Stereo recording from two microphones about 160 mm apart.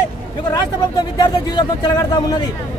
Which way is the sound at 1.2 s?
25° left (ahead or behind).